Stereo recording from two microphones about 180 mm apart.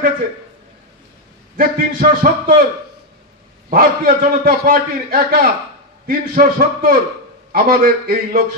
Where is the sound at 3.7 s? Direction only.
55° right (ahead or behind).